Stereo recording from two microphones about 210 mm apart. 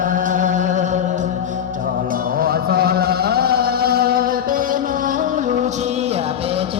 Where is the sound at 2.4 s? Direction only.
45° right (ahead or behind).